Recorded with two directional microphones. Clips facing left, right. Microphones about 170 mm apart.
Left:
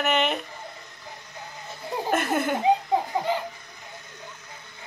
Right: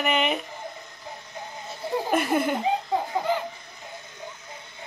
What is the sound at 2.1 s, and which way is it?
Speech, centre (ahead or behind).